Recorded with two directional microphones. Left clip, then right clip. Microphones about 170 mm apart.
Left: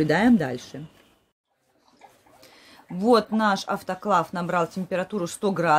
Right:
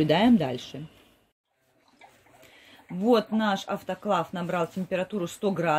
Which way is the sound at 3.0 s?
Centre (ahead or behind).